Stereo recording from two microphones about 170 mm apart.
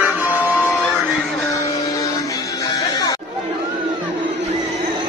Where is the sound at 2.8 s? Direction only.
20° left (ahead or behind).